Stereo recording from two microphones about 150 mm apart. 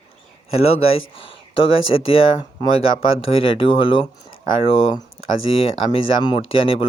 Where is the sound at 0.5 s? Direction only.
45° left (ahead or behind).